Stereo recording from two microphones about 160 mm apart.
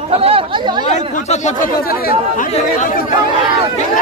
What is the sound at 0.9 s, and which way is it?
Speech, 50° left (ahead or behind).